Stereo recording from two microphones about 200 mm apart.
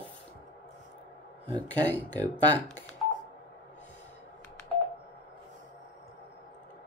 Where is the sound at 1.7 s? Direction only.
10° left (ahead or behind).